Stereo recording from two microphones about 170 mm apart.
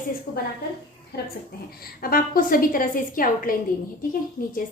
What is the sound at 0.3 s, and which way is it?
Speech, 60° left (ahead or behind).